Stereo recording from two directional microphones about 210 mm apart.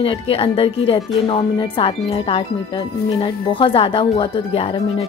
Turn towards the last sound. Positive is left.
turn(degrees=25)  # may be behind; listen again after turning